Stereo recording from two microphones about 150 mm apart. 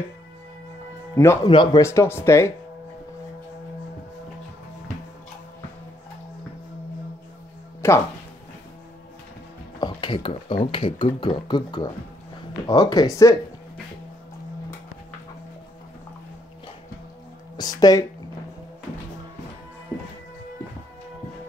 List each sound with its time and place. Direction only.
1.1 s speech: 20° left (ahead or behind)
1.5 s speech: 30° left (ahead or behind)
1.8 s speech: 20° left (ahead or behind)
7.8 s speech: 15° left (ahead or behind)
9.8 s speech: 30° left (ahead or behind)
17.6 s a sound: 25° left (ahead or behind)